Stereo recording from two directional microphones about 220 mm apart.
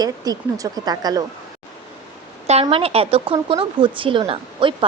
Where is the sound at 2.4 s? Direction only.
30° right (ahead or behind).